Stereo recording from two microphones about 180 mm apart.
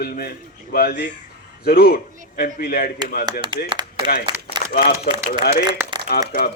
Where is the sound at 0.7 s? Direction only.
55° left (ahead or behind).